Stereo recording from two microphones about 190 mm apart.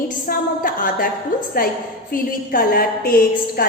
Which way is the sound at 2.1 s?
50° left (ahead or behind).